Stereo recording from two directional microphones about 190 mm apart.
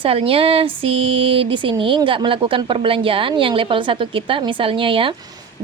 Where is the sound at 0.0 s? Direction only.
30° right (ahead or behind).